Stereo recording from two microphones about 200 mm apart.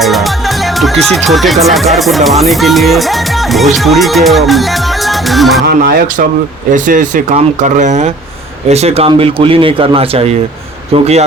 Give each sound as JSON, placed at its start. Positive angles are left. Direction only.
{"t": 0.0, "sound": "speech", "side_deg": 0}
{"t": 5.6, "sound": "speech", "side_deg": -55}
{"t": 6.7, "sound": "speech", "side_deg": -40}